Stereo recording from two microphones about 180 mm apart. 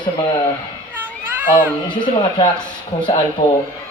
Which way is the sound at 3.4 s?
40° left (ahead or behind).